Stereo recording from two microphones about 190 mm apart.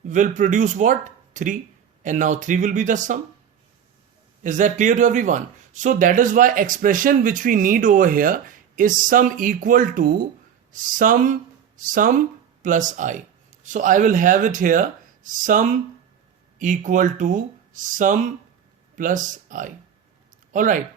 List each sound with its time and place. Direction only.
0.1 s speech: 40° right (ahead or behind)
4.4 s speech: 40° right (ahead or behind)